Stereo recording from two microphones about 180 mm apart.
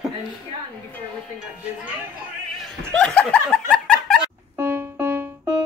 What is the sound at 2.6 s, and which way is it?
Snicker, 5° left (ahead or behind).